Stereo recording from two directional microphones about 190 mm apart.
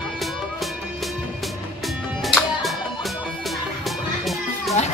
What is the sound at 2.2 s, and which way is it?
Music, centre (ahead or behind).